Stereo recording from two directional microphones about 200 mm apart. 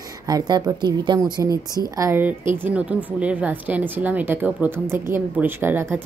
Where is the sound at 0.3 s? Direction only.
20° right (ahead or behind).